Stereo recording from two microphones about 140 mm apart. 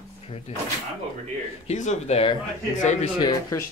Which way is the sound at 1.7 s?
55° left (ahead or behind).